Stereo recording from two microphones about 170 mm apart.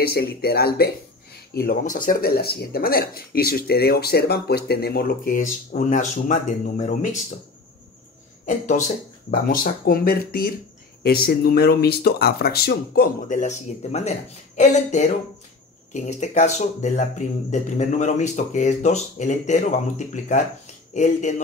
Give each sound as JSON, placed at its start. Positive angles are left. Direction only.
{"t": 0.0, "sound": "speech", "side_deg": 65}
{"t": 8.5, "sound": "speech", "side_deg": 45}
{"t": 20.9, "sound": "speech", "side_deg": 45}